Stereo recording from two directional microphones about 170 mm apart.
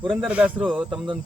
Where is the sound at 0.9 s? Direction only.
25° right (ahead or behind).